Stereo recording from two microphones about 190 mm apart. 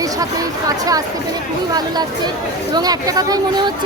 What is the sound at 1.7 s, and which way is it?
A woman's voice, 20° right (ahead or behind).